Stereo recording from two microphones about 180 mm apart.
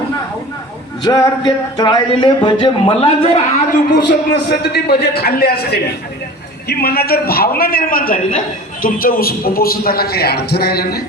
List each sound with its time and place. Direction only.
1.0 s speech: 20° left (ahead or behind)
3.9 s a man's voice: 65° left (ahead or behind)